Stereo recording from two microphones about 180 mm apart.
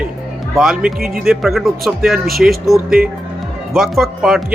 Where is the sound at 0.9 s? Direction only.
55° right (ahead or behind).